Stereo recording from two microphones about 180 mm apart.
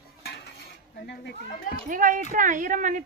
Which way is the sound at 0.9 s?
65° left (ahead or behind).